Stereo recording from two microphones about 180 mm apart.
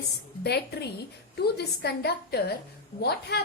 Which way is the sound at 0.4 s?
65° left (ahead or behind).